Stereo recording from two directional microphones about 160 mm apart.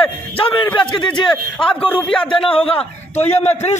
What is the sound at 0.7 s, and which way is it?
Speech, 30° left (ahead or behind).